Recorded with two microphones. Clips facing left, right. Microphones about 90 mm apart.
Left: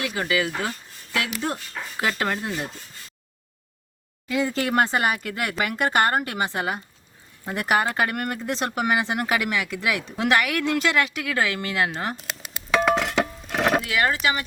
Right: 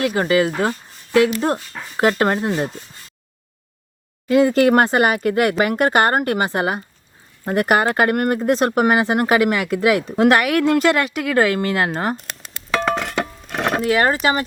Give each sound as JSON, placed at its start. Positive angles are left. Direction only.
{"t": 0.0, "sound": "speech", "side_deg": -45}
{"t": 2.0, "sound": "speech", "side_deg": -45}
{"t": 4.3, "sound": "speech", "side_deg": -55}
{"t": 12.1, "sound": "music", "side_deg": 0}
{"t": 13.8, "sound": "speech", "side_deg": -40}